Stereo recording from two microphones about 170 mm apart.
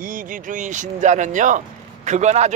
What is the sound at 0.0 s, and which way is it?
A man's voice, 55° right (ahead or behind).